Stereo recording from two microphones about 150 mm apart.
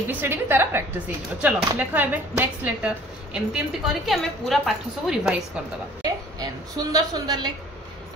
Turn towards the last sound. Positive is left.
turn(degrees=-25)  # may be behind; listen again after turning